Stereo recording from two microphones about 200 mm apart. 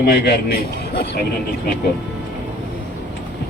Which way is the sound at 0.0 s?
50° left (ahead or behind).